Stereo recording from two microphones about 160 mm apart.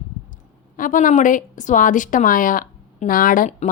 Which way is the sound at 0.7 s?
55° left (ahead or behind).